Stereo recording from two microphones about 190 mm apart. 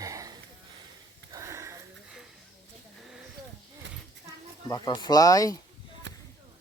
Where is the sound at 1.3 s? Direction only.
15° right (ahead or behind).